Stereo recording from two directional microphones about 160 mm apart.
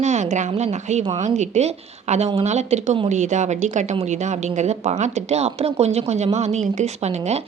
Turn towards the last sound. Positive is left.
turn(degrees=-45)  # may be behind; listen again after turning